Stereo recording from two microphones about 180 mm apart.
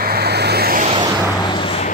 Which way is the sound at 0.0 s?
60° right (ahead or behind).